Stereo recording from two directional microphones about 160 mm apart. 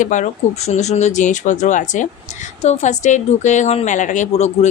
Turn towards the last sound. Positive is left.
turn(degrees=45)  # may be behind; listen again after turning